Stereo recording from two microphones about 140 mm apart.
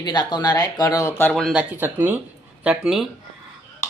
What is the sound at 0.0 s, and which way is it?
Speech, 30° left (ahead or behind).